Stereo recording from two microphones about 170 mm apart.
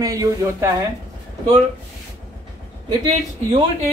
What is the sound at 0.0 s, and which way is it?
Speech, 20° right (ahead or behind).